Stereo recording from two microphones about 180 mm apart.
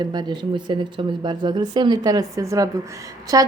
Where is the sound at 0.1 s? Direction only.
25° right (ahead or behind).